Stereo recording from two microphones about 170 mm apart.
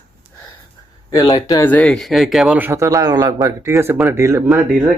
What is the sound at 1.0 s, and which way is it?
Speech, 25° left (ahead or behind).